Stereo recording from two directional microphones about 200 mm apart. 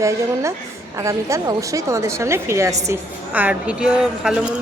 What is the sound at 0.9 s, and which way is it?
A woman's voice, 15° right (ahead or behind).